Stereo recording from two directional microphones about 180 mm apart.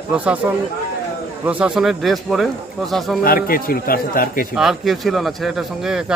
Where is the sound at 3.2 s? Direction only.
55° left (ahead or behind).